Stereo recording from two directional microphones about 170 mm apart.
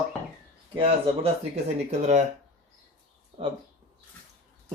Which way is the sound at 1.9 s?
45° right (ahead or behind).